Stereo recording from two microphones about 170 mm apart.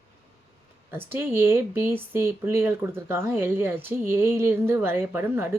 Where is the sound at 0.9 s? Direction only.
15° right (ahead or behind).